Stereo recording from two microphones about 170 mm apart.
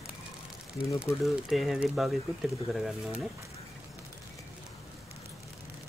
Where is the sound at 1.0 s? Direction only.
Centre (ahead or behind).